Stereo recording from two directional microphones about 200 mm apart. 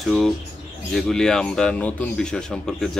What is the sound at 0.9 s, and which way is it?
A man's voice, 5° left (ahead or behind).